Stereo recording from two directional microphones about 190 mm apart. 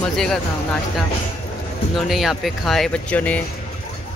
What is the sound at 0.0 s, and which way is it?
Speech, 5° left (ahead or behind).